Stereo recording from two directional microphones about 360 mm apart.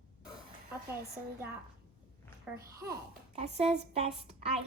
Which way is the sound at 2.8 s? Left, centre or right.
Centre.